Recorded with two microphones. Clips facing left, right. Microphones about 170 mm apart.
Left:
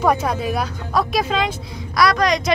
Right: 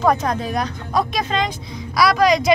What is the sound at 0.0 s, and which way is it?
Speech, 10° left (ahead or behind).